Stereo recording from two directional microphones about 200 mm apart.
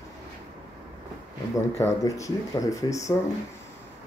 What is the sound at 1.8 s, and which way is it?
Speech, 15° left (ahead or behind).